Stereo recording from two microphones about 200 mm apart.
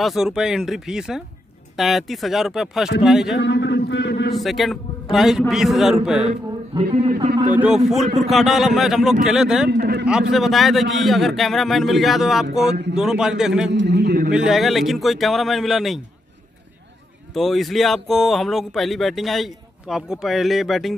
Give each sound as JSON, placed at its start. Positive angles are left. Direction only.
{"t": 0.0, "sound": "speech", "side_deg": 0}
{"t": 3.3, "sound": "a sound", "side_deg": 65}
{"t": 4.3, "sound": "speech", "side_deg": 0}
{"t": 6.7, "sound": "a man's voice", "side_deg": -30}
{"t": 7.5, "sound": "speech", "side_deg": -5}
{"t": 9.7, "sound": "a man's voice", "side_deg": -55}
{"t": 10.3, "sound": "speech", "side_deg": 0}
{"t": 13.7, "sound": "a man's voice", "side_deg": -60}
{"t": 14.3, "sound": "speech", "side_deg": -5}
{"t": 17.3, "sound": "speech", "side_deg": 0}